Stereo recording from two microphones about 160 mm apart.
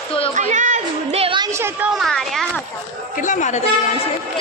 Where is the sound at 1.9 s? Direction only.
Centre (ahead or behind).